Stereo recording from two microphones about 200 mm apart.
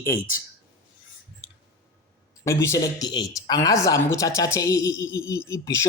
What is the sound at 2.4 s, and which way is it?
A woman's voice, 15° left (ahead or behind).